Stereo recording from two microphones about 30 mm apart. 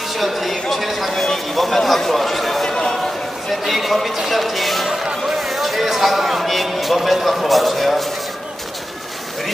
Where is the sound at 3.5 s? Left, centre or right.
Centre.